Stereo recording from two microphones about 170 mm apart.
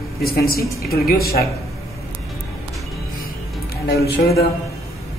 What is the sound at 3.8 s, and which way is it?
Speech, 70° left (ahead or behind).